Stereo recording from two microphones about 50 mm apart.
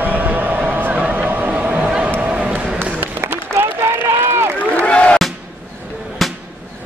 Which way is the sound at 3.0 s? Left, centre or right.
Right.